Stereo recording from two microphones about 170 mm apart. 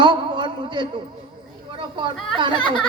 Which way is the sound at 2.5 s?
25° left (ahead or behind).